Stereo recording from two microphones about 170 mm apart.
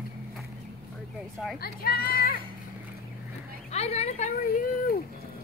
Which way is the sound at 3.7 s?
40° left (ahead or behind).